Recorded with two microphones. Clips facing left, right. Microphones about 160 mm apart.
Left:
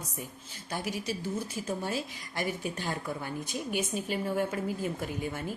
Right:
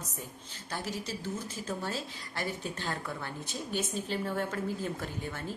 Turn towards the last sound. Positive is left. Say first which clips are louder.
# left 3 dB
turn(degrees=10)  # may be behind; listen again after turning